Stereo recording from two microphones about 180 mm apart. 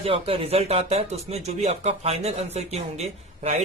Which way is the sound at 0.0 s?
30° right (ahead or behind).